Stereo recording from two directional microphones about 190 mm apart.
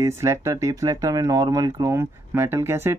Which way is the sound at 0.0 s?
15° right (ahead or behind).